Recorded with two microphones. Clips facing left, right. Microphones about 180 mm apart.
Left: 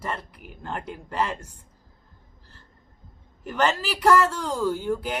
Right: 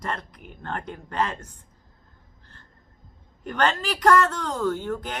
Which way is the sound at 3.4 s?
5° left (ahead or behind).